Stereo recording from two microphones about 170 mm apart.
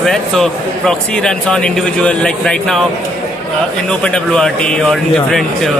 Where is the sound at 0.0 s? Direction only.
Centre (ahead or behind).